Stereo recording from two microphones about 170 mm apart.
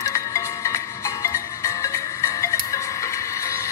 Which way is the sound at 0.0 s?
15° left (ahead or behind).